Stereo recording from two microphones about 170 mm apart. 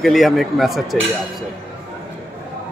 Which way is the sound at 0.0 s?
Centre (ahead or behind).